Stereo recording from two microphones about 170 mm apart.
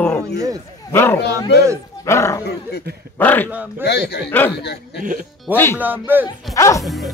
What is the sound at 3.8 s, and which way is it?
Speech, 80° left.